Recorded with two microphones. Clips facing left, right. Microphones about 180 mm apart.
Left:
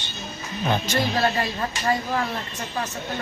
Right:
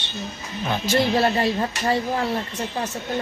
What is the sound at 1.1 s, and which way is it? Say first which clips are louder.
Speech: right 4 dB; 25° right (ahead or behind).